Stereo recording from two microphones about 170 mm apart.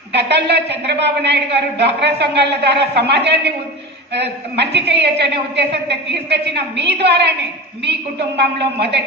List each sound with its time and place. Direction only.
0.1 s a woman's voice: 80° right
8.4 s a woman's voice: 80° right